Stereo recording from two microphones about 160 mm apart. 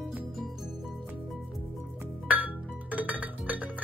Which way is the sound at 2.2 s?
10° right (ahead or behind).